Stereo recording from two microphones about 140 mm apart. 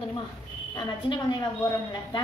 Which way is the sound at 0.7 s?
30° left (ahead or behind).